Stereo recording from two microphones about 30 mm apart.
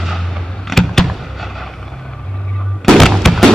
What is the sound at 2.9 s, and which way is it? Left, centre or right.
Music, centre.